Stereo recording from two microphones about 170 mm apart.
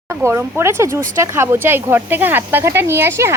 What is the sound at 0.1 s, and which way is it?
Speech, 15° right (ahead or behind).